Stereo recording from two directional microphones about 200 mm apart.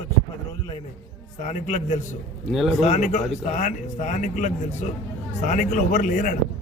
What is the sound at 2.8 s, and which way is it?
A man's voice, 35° left (ahead or behind).